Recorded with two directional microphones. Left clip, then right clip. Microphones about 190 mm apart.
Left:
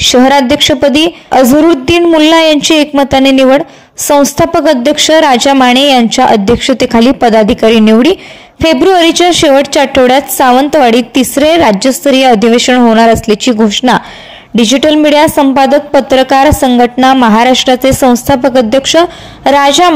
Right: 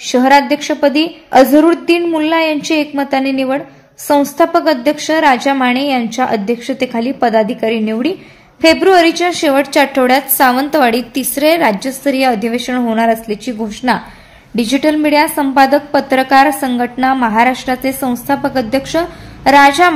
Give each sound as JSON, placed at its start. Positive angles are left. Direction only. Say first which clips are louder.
{"t": 0.0, "sound": "a woman's voice", "louder": "left 4 dB", "side_deg": 50}